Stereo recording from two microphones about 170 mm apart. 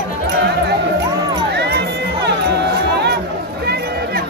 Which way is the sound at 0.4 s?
80° right.